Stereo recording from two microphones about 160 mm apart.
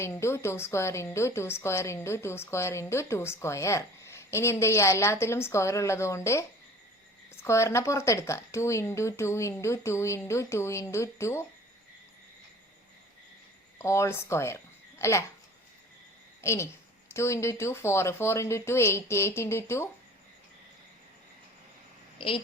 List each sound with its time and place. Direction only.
0.0 s a woman's voice: 15° left (ahead or behind)
7.4 s a woman's voice: 20° left (ahead or behind)
13.7 s speech: 15° left (ahead or behind)
16.4 s a woman's voice: 15° left (ahead or behind)